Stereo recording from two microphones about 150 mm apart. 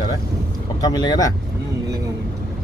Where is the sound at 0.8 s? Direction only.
25° left (ahead or behind).